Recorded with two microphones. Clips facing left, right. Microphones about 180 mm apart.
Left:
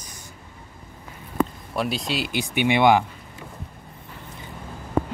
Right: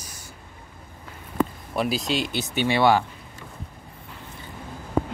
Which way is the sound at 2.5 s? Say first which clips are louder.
Left 2 dB; 15° left (ahead or behind).